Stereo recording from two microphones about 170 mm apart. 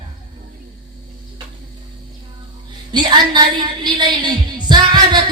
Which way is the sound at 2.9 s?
25° right (ahead or behind).